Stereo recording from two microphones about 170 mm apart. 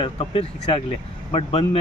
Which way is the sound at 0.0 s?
35° left (ahead or behind).